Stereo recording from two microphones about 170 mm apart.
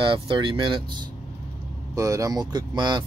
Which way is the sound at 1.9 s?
20° right (ahead or behind).